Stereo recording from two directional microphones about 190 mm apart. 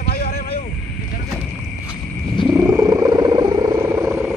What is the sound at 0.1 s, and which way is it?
Vehicle, 55° left (ahead or behind).